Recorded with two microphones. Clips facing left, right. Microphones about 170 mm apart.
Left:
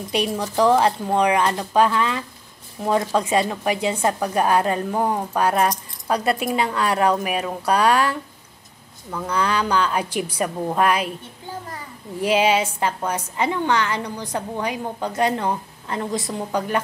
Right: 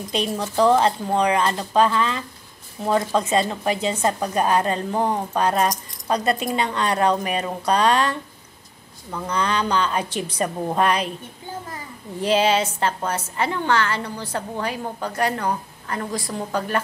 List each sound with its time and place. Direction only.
0.1 s a woman's voice: 15° left (ahead or behind)
9.2 s a woman's voice: 10° left (ahead or behind)
12.2 s a woman's voice: 10° left (ahead or behind)